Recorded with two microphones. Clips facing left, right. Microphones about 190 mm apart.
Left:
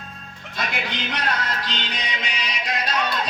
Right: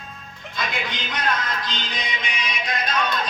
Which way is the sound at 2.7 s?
35° left (ahead or behind).